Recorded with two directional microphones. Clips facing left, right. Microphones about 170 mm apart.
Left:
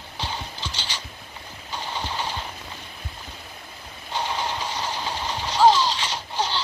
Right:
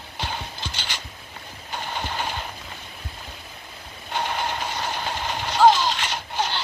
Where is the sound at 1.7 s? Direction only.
55° right (ahead or behind).